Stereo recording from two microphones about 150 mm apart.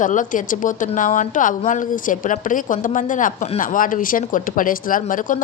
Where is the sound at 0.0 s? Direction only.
60° left (ahead or behind).